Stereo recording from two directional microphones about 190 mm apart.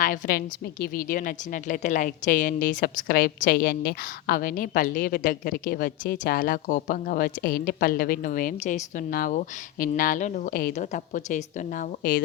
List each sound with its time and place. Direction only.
0.0 s a woman's voice: 50° left (ahead or behind)